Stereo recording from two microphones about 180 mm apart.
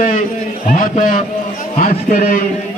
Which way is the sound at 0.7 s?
50° left (ahead or behind).